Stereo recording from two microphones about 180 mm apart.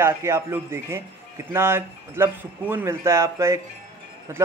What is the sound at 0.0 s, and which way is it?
Speech, 15° right (ahead or behind).